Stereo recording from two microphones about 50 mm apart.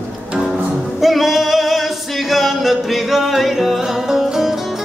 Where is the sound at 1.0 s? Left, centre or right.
Centre.